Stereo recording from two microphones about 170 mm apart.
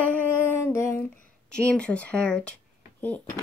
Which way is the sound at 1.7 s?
5° left (ahead or behind).